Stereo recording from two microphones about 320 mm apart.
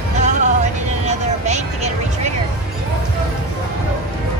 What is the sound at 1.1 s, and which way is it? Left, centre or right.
Vehicle, right.